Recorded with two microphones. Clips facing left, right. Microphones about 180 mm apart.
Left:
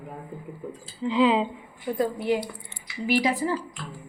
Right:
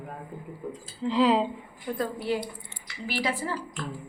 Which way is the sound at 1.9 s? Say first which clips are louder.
Left 4 dB; 15° left (ahead or behind).